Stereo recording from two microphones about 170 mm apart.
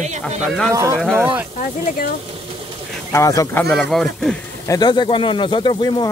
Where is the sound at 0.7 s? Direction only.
20° right (ahead or behind).